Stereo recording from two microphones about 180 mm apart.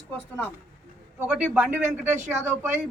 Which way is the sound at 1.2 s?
5° right (ahead or behind).